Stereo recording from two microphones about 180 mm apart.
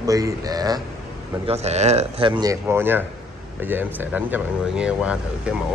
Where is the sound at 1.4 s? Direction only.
35° right (ahead or behind).